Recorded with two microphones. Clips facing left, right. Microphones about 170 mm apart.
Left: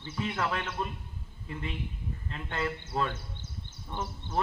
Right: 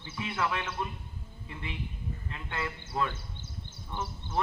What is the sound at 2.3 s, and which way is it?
Speech, 35° left (ahead or behind).